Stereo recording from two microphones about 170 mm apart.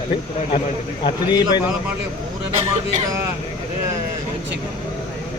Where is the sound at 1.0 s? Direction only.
25° left (ahead or behind).